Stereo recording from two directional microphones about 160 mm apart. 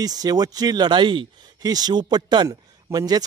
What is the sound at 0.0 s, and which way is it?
A man's voice, 25° right (ahead or behind).